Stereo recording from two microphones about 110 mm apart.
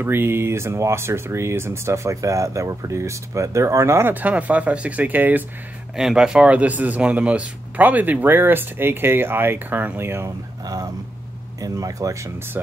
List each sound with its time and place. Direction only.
0.0 s speech: 20° right (ahead or behind)
5.9 s speech: 5° right (ahead or behind); by 10.3 s 20° right (ahead or behind)
10.6 s speech: 35° right (ahead or behind)